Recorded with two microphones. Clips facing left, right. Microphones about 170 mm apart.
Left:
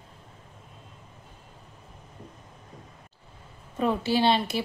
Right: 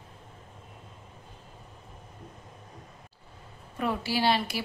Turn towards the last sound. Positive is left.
turn(degrees=25)  # may be behind; listen again after turning